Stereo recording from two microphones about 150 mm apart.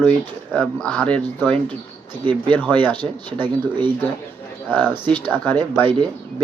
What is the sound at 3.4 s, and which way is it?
Speech, 30° right (ahead or behind).